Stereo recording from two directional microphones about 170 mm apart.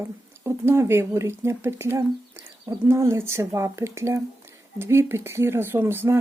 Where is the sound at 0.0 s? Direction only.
15° right (ahead or behind).